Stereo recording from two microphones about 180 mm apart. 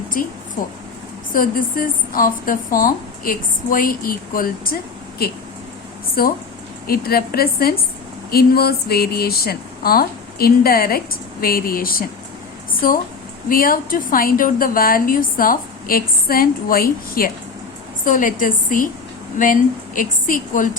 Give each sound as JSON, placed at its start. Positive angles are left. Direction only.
{"t": 0.1, "sound": "a woman's voice", "side_deg": 50}
{"t": 6.2, "sound": "a woman's voice", "side_deg": 55}
{"t": 20.0, "sound": "a woman's voice", "side_deg": 50}